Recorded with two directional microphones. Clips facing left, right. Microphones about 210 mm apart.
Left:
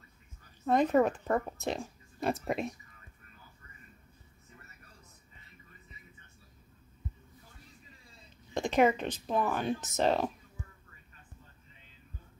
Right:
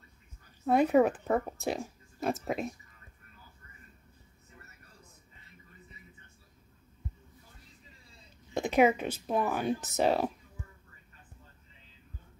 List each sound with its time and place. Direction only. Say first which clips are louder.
0.7 s speech: right 2 dB; 10° right (ahead or behind)
8.5 s speech: right 1 dB; 5° right (ahead or behind)